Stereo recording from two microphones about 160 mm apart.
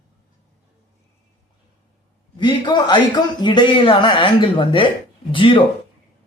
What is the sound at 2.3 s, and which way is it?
A man's voice, 30° left (ahead or behind).